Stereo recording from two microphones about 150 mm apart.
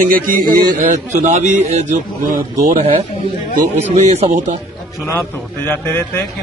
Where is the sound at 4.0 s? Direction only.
50° right (ahead or behind).